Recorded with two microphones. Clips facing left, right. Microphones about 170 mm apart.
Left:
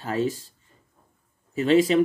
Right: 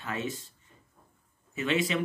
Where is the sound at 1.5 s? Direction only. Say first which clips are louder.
Left 10 dB; 35° left (ahead or behind).